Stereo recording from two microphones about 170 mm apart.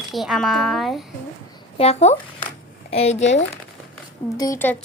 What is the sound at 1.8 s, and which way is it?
Speech, 40° left (ahead or behind).